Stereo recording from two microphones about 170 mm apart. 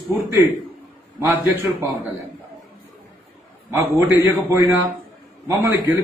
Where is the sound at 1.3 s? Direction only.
10° right (ahead or behind).